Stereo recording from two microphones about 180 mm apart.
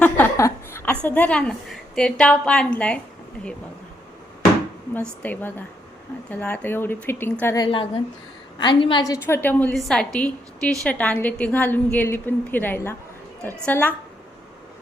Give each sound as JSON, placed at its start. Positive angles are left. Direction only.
{"t": 0.0, "sound": "a sound", "side_deg": 15}
{"t": 4.9, "sound": "a woman's voice", "side_deg": 10}
{"t": 9.2, "sound": "a woman's voice", "side_deg": 10}